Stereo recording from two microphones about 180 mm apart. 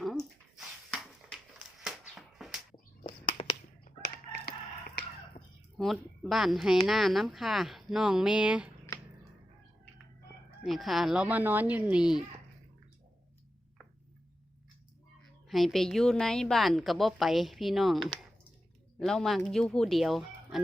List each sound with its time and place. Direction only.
0.0 s bathtub: centre (ahead or behind)
1.5 s a sound: centre (ahead or behind)
3.3 s a sound: 25° left (ahead or behind)
4.0 s crowing: 60° left (ahead or behind)
5.4 s chicken: 40° left (ahead or behind)
5.7 s speech: centre (ahead or behind)
10.6 s speech: centre (ahead or behind)
15.4 s speech: centre (ahead or behind)